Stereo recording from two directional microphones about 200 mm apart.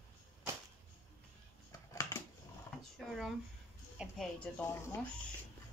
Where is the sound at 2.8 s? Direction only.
Centre (ahead or behind).